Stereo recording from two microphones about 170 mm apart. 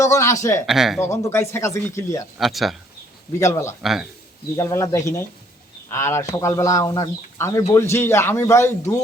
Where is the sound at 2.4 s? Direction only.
Centre (ahead or behind).